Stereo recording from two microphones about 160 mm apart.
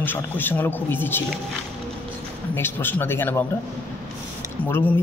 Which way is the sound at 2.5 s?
15° left (ahead or behind).